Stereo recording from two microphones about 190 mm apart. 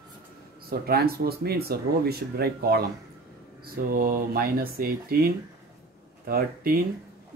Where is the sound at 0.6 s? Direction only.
55° right (ahead or behind).